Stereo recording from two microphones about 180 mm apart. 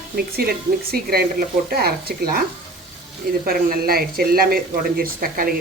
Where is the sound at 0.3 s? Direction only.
55° right (ahead or behind).